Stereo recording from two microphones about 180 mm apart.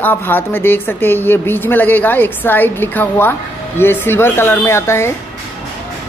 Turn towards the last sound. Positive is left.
turn(degrees=15)  # may be behind; listen again after turning